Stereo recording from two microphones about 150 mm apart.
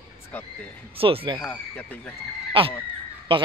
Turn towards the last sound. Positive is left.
turn(degrees=-35)  # may be behind; listen again after turning